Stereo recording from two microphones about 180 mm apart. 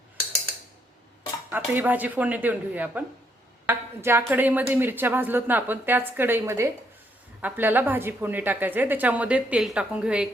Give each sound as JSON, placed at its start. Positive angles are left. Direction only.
{"t": 1.5, "sound": "a woman's voice", "side_deg": -10}